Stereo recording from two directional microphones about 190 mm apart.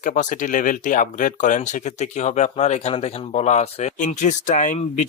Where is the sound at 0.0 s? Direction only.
40° left (ahead or behind).